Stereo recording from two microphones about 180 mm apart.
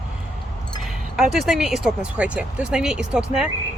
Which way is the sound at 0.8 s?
Centre (ahead or behind).